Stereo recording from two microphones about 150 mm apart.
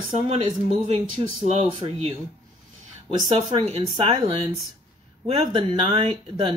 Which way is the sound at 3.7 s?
40° right (ahead or behind).